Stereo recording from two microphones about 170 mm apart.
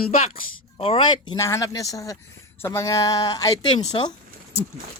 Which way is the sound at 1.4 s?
20° left (ahead or behind).